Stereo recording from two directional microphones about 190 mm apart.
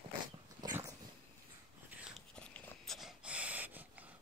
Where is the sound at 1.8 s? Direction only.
Centre (ahead or behind).